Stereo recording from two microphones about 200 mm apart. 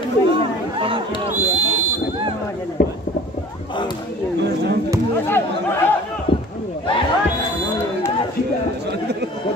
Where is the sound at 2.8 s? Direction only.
50° left (ahead or behind).